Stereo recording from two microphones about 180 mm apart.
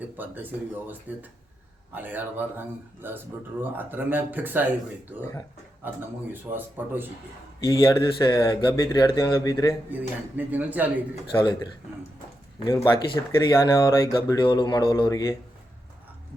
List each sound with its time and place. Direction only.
0.2 s a man's voice: 10° right (ahead or behind)
5.8 s a man's voice: 10° right (ahead or behind)
7.6 s speech: 20° left (ahead or behind)
9.9 s a man's voice: 10° right (ahead or behind)
11.1 s speech: 25° left (ahead or behind)
12.6 s speech: 15° left (ahead or behind)